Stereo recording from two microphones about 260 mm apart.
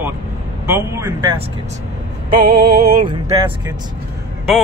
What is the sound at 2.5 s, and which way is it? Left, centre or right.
Music, right.